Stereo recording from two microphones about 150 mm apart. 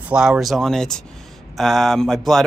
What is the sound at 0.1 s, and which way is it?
Speech, 5° right (ahead or behind).